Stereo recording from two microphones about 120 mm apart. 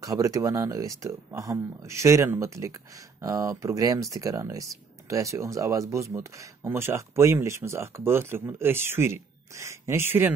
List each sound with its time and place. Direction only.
0.0 s speech: 30° right (ahead or behind)